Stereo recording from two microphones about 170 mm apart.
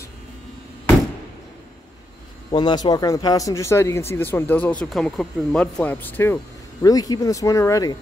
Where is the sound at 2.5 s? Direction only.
25° left (ahead or behind).